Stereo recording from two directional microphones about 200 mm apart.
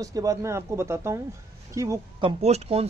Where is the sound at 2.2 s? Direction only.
30° right (ahead or behind).